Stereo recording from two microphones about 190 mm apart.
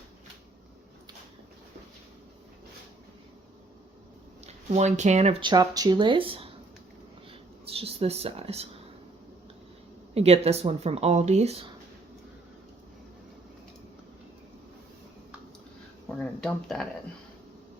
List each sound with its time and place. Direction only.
4.4 s speech: 35° right (ahead or behind)
7.7 s speech: 30° right (ahead or behind)
10.2 s speech: 35° right (ahead or behind)
16.0 s speech: 5° left (ahead or behind)